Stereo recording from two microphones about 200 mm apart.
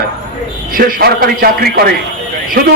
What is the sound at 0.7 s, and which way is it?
A man's voice, 45° right (ahead or behind).